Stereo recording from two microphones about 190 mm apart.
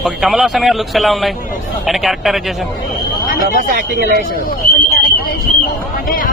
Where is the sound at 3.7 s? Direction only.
45° right (ahead or behind).